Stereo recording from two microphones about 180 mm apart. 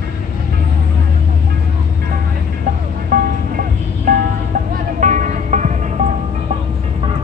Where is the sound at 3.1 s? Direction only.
50° right (ahead or behind).